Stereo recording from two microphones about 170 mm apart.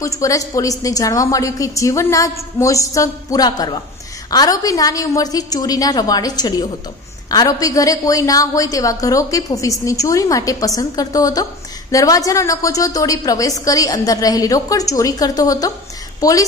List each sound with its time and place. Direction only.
0.0 s a woman's voice: 20° left (ahead or behind)